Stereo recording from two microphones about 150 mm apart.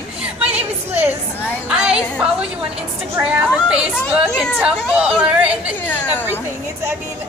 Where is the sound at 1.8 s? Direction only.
5° right (ahead or behind).